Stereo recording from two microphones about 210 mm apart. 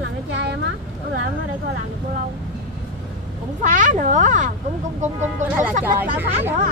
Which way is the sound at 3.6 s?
35° right (ahead or behind).